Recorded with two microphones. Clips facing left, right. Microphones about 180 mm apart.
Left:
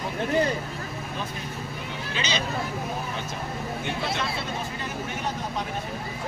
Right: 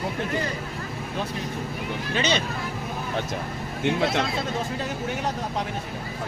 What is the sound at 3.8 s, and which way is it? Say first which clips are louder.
Speech: right 9 dB; 75° right (ahead or behind).